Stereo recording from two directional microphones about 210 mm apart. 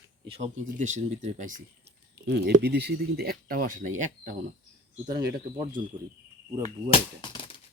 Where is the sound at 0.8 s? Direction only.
35° right (ahead or behind).